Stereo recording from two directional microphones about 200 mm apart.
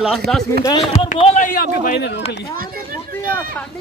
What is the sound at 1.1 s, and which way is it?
Speech, 35° left (ahead or behind).